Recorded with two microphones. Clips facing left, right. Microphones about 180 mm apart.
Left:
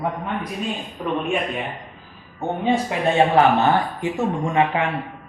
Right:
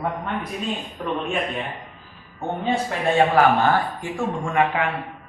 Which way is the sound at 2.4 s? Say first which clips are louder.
Left 3 dB; 20° left (ahead or behind).